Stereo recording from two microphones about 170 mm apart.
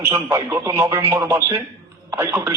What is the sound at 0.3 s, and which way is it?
Speech, 15° right (ahead or behind).